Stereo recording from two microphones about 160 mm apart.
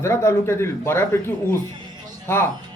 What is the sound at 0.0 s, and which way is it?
Speech, 15° left (ahead or behind).